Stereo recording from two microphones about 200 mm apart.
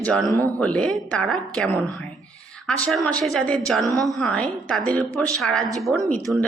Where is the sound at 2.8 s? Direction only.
5° left (ahead or behind).